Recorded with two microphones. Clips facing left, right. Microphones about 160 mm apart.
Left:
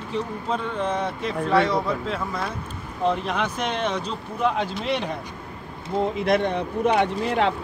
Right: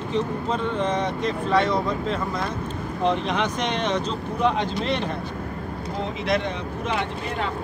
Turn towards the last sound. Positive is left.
turn(degrees=60)  # may be behind; listen again after turning